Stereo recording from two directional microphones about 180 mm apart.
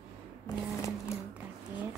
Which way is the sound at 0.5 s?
20° left (ahead or behind).